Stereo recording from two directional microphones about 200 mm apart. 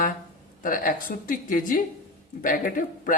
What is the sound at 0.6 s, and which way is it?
A man's voice, 45° left (ahead or behind).